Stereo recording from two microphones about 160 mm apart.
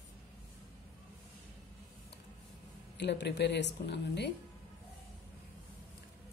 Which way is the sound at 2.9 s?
90° left.